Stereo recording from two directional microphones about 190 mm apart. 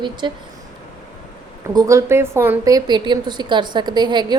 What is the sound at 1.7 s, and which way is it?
A woman's voice, 15° right (ahead or behind).